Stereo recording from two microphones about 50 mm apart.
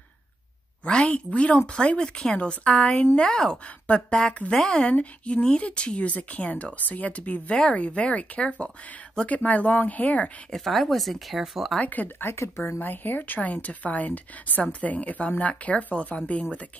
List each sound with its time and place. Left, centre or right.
0.8 s speech: left
2.0 s speech: centre
2.3 s speech: left
3.2 s speech: centre
3.8 s speech: left
4.6 s speech: centre
4.9 s a woman's voice: left
10.5 s speech: centre
11.8 s a woman's voice: left
12.3 s a woman's voice: left